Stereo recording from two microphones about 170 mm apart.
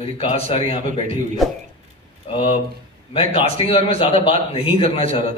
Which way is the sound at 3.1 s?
35° left (ahead or behind).